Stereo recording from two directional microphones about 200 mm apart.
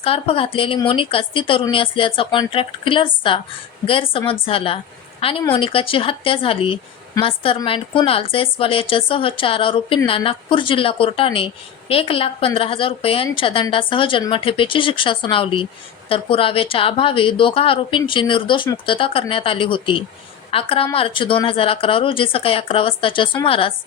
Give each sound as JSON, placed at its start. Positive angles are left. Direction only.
{"t": 0.0, "sound": "a woman's voice", "side_deg": 30}